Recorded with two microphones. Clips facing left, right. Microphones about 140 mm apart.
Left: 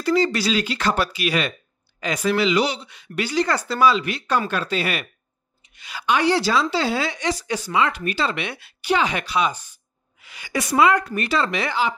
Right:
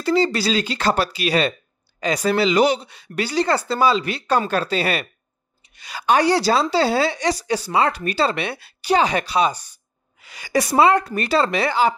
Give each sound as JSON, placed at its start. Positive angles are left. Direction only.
{"t": 0.0, "sound": "speech", "side_deg": -30}
{"t": 2.6, "sound": "speech", "side_deg": -50}
{"t": 2.9, "sound": "speech", "side_deg": -35}